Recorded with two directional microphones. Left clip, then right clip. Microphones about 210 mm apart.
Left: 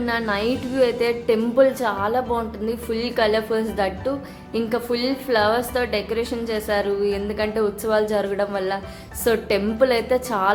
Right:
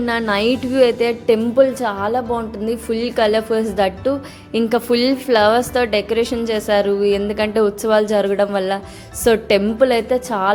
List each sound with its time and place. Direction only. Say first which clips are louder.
0.0 s a woman's voice: right 5 dB; 30° right (ahead or behind)